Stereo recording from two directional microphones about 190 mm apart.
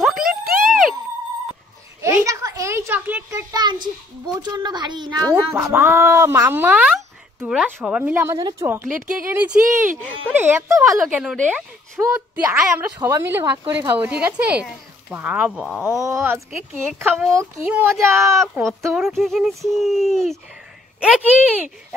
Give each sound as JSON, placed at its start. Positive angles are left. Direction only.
{"t": 0.0, "sound": "a sound", "side_deg": 0}
{"t": 0.5, "sound": "a sound", "side_deg": -50}
{"t": 2.0, "sound": "a sound", "side_deg": -15}
{"t": 4.4, "sound": "speech", "side_deg": -20}
{"t": 5.3, "sound": "speech", "side_deg": -10}
{"t": 9.6, "sound": "speech", "side_deg": -45}
{"t": 10.3, "sound": "speech", "side_deg": -10}
{"t": 18.3, "sound": "speech", "side_deg": 0}
{"t": 18.7, "sound": "speech", "side_deg": -15}
{"t": 18.9, "sound": "speech", "side_deg": 0}